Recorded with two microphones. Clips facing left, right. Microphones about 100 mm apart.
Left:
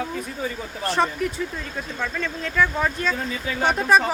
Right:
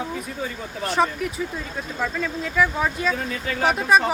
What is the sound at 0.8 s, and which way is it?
Speech, centre (ahead or behind).